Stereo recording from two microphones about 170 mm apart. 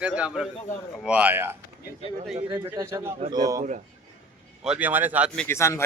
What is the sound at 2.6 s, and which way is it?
A man's voice, 15° right (ahead or behind).